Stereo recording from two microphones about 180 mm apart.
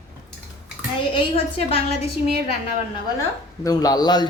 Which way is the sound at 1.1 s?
30° left (ahead or behind).